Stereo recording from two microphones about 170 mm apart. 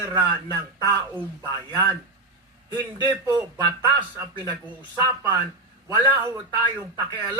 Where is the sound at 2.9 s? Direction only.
20° right (ahead or behind).